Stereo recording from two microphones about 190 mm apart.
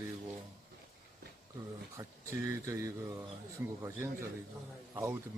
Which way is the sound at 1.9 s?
15° right (ahead or behind).